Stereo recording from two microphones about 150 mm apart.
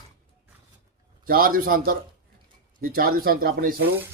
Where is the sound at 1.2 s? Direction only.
75° right (ahead or behind).